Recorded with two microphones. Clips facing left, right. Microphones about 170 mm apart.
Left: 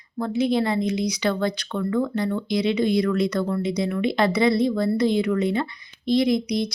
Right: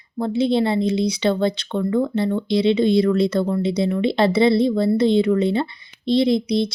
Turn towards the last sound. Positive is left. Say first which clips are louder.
# right 3 dB
turn(degrees=-30)  # may be behind; listen again after turning